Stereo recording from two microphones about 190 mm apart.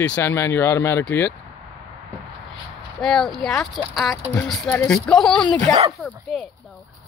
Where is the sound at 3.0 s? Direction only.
Centre (ahead or behind).